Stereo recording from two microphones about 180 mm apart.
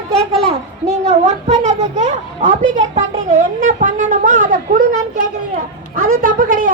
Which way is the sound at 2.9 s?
40° right (ahead or behind).